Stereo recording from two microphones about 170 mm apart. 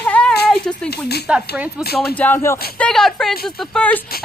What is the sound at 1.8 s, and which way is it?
Speech, 65° left (ahead or behind).